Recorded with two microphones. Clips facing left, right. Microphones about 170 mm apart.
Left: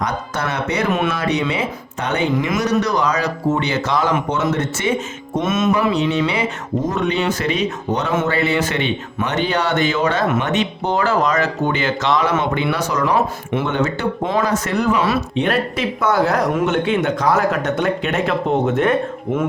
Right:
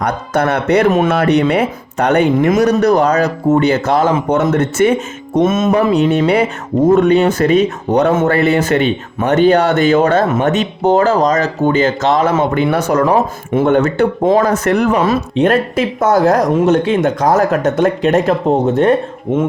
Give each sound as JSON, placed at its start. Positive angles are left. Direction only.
{"t": 0.0, "sound": "speech", "side_deg": -60}
{"t": 0.9, "sound": "speech", "side_deg": -40}
{"t": 1.1, "sound": "speech", "side_deg": -60}
{"t": 13.1, "sound": "speech", "side_deg": -45}